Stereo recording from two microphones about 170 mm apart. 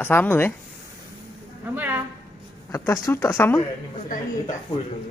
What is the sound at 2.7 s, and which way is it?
Speech, 15° left (ahead or behind).